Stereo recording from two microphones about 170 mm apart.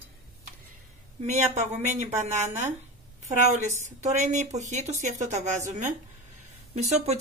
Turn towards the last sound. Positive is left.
turn(degrees=-40)  # may be behind; listen again after turning